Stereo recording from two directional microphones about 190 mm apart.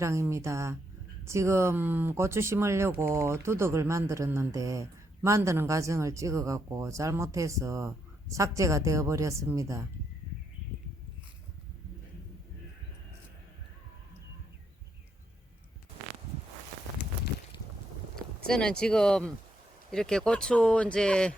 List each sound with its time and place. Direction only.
0.0 s speech: 15° right (ahead or behind)
18.4 s speech: 5° left (ahead or behind)